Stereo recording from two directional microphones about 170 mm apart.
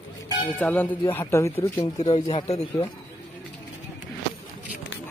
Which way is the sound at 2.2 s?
35° left (ahead or behind).